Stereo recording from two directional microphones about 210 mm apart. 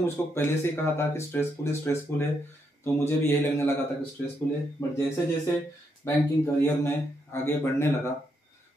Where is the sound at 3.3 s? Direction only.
10° left (ahead or behind).